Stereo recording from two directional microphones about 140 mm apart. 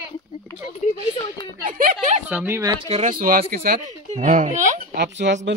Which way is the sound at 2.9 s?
65° right (ahead or behind).